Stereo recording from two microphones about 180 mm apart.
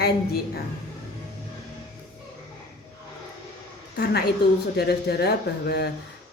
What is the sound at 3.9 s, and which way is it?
Speech, 65° left (ahead or behind).